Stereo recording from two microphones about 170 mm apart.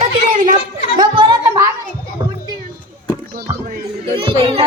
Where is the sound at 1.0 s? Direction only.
25° right (ahead or behind).